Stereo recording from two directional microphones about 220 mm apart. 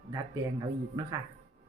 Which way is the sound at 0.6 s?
15° right (ahead or behind).